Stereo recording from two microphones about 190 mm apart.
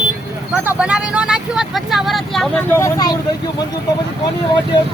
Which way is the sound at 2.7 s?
20° left (ahead or behind).